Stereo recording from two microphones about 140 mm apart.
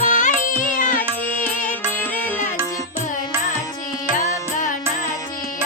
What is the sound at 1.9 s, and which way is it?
Music, 15° left (ahead or behind).